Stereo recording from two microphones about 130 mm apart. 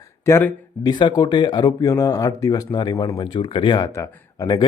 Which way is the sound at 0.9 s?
35° left (ahead or behind).